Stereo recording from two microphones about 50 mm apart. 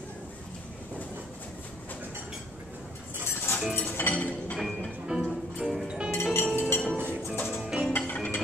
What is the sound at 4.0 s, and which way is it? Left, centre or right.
Chink, left.